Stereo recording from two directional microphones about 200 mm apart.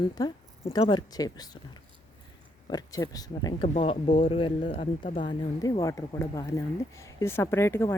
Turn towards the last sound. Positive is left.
turn(degrees=10)  # may be behind; listen again after turning